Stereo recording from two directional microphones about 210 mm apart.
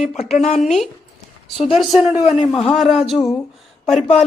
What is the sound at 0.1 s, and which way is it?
Speech, 30° left (ahead or behind).